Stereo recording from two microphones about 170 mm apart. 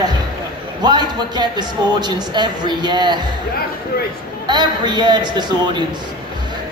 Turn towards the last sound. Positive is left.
turn(degrees=-25)  # may be behind; listen again after turning